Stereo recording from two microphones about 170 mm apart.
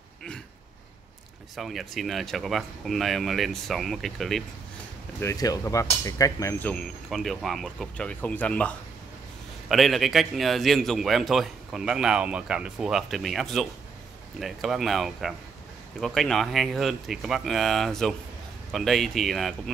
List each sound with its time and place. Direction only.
1.6 s a man's voice: centre (ahead or behind)
5.2 s speech: 20° left (ahead or behind)
6.7 s a man's voice: 5° left (ahead or behind)